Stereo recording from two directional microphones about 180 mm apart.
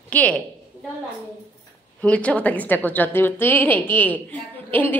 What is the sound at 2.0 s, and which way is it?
A woman's voice, 10° left (ahead or behind).